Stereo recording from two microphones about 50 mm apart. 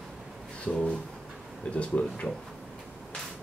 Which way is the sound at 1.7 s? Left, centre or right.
Left.